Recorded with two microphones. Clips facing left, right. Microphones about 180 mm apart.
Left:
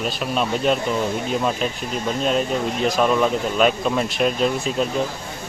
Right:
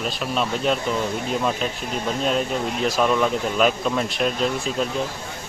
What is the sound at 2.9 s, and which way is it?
Speech, 5° left (ahead or behind).